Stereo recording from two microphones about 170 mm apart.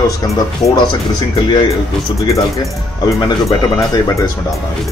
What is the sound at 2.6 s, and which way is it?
Speech, 20° left (ahead or behind).